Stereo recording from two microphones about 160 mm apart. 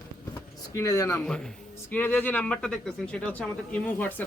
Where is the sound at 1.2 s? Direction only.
5° left (ahead or behind).